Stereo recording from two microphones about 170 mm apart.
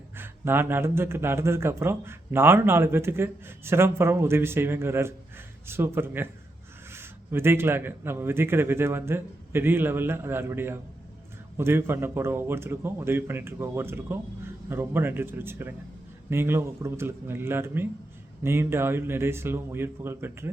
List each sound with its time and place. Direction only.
0.2 s a man's voice: 10° right (ahead or behind)